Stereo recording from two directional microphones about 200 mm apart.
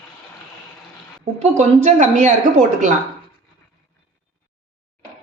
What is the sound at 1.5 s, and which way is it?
Speech, 35° right (ahead or behind).